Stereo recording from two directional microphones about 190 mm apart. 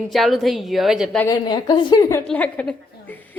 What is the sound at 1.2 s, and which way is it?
A woman's voice, 20° left (ahead or behind).